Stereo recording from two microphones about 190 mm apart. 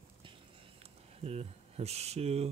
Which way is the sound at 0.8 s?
30° right (ahead or behind).